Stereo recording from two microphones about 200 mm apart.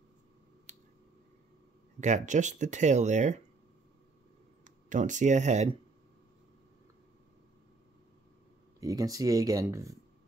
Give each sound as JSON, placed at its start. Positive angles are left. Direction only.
{"t": 0.7, "sound": "a sound", "side_deg": -35}
{"t": 2.0, "sound": "speech", "side_deg": -35}
{"t": 4.6, "sound": "speech", "side_deg": -40}
{"t": 8.7, "sound": "speech", "side_deg": -15}